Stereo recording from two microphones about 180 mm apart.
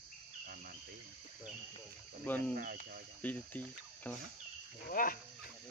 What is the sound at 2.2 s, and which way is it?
Speech, 10° left (ahead or behind).